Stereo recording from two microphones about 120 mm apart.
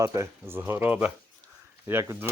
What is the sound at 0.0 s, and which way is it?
Speech, 30° right (ahead or behind).